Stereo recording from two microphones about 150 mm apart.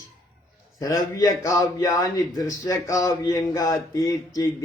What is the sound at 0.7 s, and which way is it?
Speech, 25° left (ahead or behind).